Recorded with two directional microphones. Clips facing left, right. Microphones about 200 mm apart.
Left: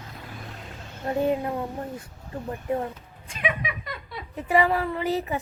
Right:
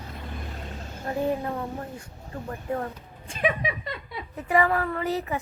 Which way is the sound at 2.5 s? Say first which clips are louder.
Left 2 dB; 20° left (ahead or behind).